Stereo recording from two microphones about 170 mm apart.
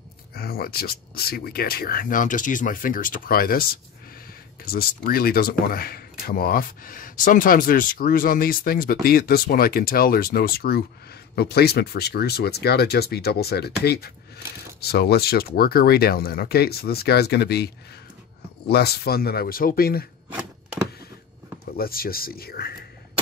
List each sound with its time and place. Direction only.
0.3 s speech: 65° left (ahead or behind)
4.7 s speech: 60° left (ahead or behind)
18.7 s speech: 70° left (ahead or behind)
21.7 s speech: 60° left (ahead or behind)